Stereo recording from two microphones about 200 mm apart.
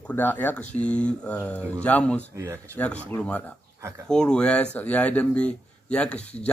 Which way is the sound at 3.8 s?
15° right (ahead or behind).